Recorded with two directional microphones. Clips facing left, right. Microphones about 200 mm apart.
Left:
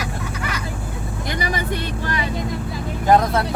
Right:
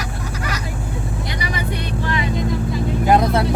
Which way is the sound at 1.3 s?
45° left (ahead or behind).